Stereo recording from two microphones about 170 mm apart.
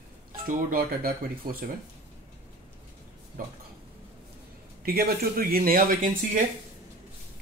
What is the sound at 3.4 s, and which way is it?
Speech, 55° right (ahead or behind).